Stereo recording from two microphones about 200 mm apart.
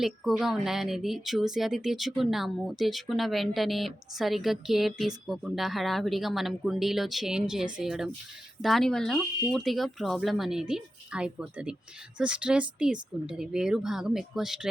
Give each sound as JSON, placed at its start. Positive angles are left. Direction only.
{"t": 0.0, "sound": "speech", "side_deg": 0}